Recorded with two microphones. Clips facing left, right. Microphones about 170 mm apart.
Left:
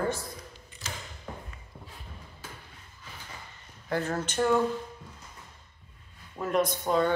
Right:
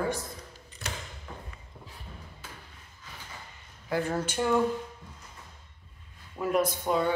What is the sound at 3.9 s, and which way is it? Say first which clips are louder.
Speech: right 1 dB; 10° right (ahead or behind).